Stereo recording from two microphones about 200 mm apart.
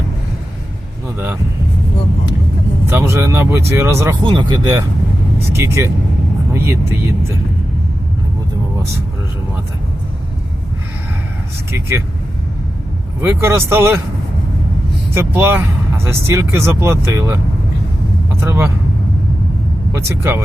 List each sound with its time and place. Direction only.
2.8 s speech: 10° right (ahead or behind)
11.7 s speech: 10° right (ahead or behind)
13.2 s speech: 10° right (ahead or behind)
15.1 s a man's voice: 10° right (ahead or behind)
19.9 s speech: 10° right (ahead or behind)